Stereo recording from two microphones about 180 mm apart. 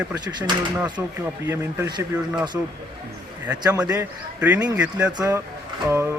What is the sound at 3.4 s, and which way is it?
Speech, 10° right (ahead or behind).